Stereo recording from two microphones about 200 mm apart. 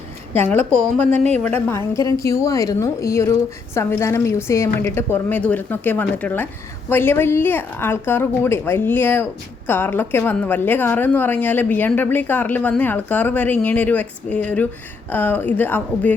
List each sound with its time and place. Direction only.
1.1 s speech: 35° right (ahead or behind)
1.5 s a woman's voice: 10° left (ahead or behind)